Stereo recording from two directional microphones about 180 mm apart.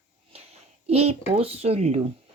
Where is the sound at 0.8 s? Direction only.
35° right (ahead or behind).